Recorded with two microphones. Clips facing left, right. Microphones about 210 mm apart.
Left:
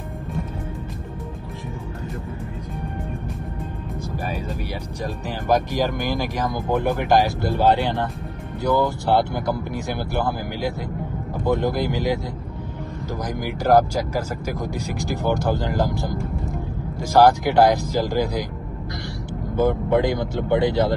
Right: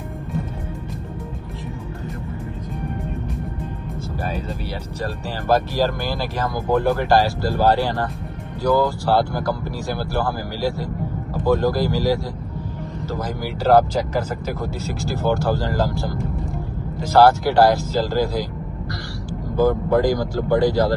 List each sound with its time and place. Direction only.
5.0 s speech: 15° left (ahead or behind)
13.7 s speech: 10° left (ahead or behind)
19.5 s speech: 20° left (ahead or behind)